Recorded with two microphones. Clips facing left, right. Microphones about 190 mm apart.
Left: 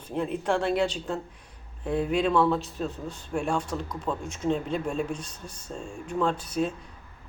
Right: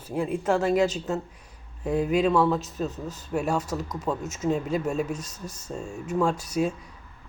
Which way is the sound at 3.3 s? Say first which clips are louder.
Right 2 dB; 5° right (ahead or behind).